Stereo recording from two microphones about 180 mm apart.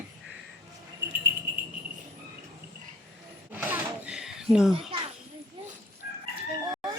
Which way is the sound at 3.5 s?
5° right (ahead or behind).